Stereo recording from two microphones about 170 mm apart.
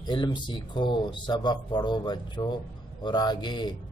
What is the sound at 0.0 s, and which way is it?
Speech, 25° left (ahead or behind).